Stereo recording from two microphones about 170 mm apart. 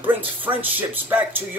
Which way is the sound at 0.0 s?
10° right (ahead or behind).